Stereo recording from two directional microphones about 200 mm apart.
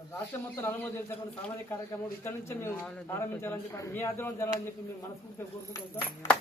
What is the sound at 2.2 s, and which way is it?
A man's voice, 10° left (ahead or behind).